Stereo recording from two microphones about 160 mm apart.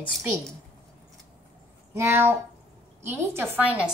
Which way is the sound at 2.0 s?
15° right (ahead or behind).